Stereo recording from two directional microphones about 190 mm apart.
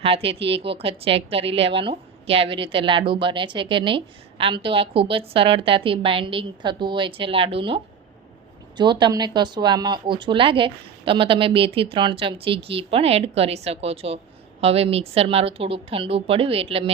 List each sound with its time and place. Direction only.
0.0 s a woman's voice: 30° right (ahead or behind)
8.8 s a woman's voice: 25° right (ahead or behind)